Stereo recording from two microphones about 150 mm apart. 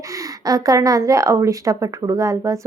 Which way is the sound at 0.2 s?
25° right (ahead or behind).